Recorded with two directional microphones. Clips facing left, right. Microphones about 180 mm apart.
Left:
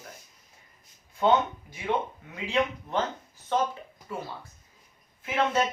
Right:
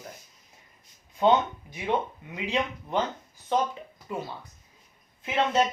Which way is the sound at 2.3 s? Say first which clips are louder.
Left 2 dB; 20° right (ahead or behind).